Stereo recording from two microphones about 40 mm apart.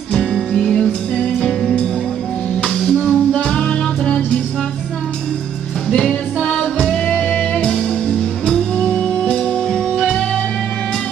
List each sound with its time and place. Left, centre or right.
0.1 s music: centre
2.9 s music: centre
3.4 s music: centre
5.9 s music: centre